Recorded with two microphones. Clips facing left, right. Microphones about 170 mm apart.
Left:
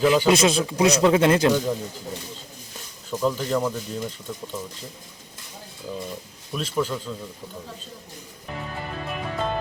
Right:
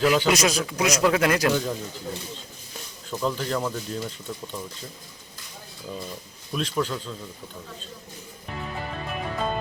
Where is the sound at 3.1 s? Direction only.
10° left (ahead or behind).